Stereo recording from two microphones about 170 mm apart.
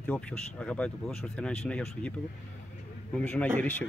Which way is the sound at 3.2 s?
5° left (ahead or behind).